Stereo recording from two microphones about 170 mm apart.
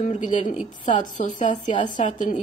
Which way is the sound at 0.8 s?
45° left (ahead or behind).